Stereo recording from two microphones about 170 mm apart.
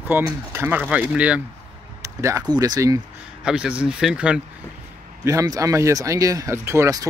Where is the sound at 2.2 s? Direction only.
20° right (ahead or behind).